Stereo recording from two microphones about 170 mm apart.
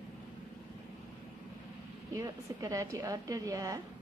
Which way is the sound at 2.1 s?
20° right (ahead or behind).